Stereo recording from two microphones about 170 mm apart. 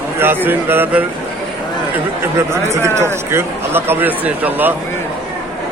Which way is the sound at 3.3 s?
15° right (ahead or behind).